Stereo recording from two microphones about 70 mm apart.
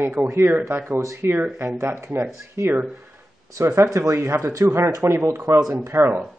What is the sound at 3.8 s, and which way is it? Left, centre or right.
A man's voice, right.